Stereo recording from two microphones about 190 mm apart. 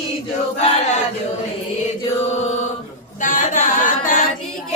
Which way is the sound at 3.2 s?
45° left (ahead or behind).